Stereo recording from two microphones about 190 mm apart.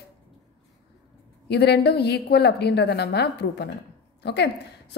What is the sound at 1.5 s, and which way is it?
A woman's voice, 60° left (ahead or behind).